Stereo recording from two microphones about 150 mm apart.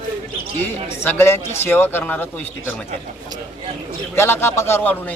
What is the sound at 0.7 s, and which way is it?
Speech, 15° left (ahead or behind).